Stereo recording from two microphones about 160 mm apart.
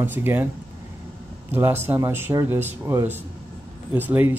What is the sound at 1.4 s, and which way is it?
Speech, 15° right (ahead or behind).